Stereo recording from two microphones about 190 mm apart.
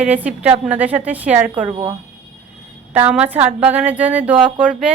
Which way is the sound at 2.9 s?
10° right (ahead or behind).